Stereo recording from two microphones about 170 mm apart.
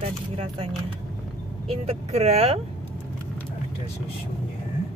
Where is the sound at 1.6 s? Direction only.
35° right (ahead or behind).